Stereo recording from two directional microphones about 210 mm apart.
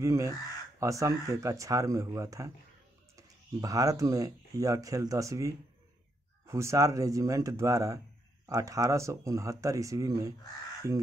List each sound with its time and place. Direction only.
0.0 s speech: 15° right (ahead or behind)